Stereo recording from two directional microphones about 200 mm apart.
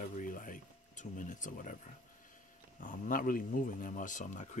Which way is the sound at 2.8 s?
40° left (ahead or behind).